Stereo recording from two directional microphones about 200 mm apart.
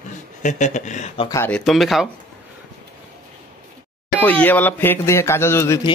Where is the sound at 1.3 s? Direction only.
10° left (ahead or behind).